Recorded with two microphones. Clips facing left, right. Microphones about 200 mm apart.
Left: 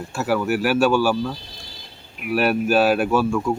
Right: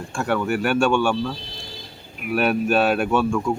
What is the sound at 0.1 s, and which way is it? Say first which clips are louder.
Speech: left 1 dB; 5° left (ahead or behind).